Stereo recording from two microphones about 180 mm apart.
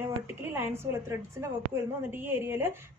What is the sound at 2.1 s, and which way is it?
Speech, 10° right (ahead or behind).